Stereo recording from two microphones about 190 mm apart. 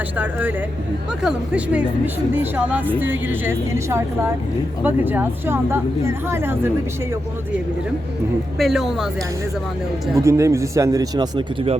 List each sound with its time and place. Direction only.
0.2 s speech: 10° right (ahead or behind)
8.5 s speech: centre (ahead or behind)
10.2 s speech: 15° right (ahead or behind)